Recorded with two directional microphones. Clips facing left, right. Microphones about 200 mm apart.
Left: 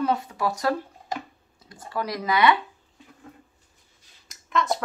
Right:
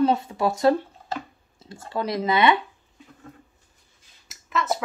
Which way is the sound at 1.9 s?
25° right (ahead or behind).